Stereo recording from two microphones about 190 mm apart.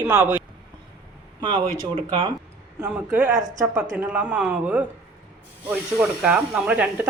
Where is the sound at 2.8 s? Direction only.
10° right (ahead or behind).